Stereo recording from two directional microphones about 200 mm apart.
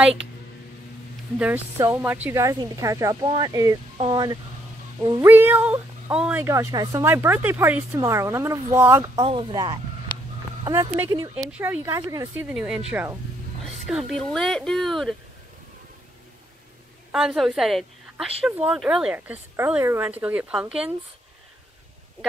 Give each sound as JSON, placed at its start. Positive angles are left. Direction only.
{"t": 1.4, "sound": "a woman's voice", "side_deg": -10}
{"t": 5.3, "sound": "a woman's voice", "side_deg": -10}
{"t": 9.2, "sound": "a woman's voice", "side_deg": -25}
{"t": 17.1, "sound": "a woman's voice", "side_deg": -5}